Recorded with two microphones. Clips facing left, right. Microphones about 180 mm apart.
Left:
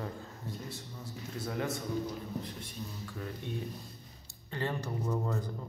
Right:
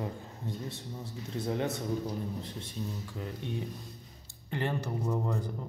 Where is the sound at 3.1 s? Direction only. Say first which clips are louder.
Right 2 dB; 20° right (ahead or behind).